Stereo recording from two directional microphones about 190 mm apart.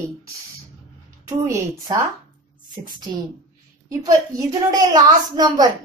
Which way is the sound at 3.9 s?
20° right (ahead or behind).